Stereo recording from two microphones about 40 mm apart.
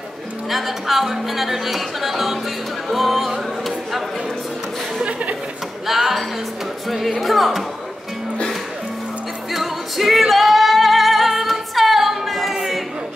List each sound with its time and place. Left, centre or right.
0.5 s speech: centre
2.9 s music: centre
5.9 s speech: centre
9.5 s music: centre